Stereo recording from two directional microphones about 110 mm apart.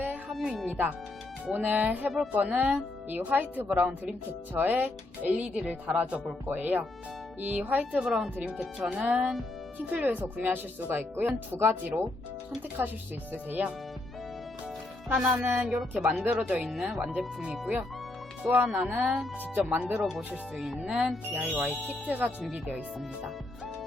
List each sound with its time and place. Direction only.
0.0 s music: 15° right (ahead or behind)
0.3 s music: 5° right (ahead or behind)
0.7 s speech: 15° right (ahead or behind)
15.1 s speech: 10° right (ahead or behind)
17.0 s speech: 15° right (ahead or behind)
19.7 s speech: 15° right (ahead or behind)
20.1 s speech: centre (ahead or behind)